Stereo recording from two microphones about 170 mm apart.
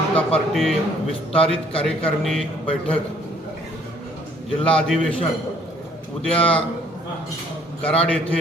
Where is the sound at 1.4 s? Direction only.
35° left (ahead or behind).